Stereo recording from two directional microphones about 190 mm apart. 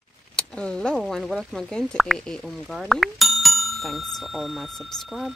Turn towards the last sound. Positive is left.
turn(degrees=0)  # may be behind; listen again after turning